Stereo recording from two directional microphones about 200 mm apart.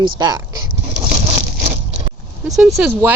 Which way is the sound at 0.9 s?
30° right (ahead or behind).